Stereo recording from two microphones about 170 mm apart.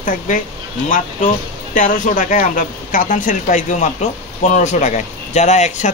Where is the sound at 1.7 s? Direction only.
50° left (ahead or behind).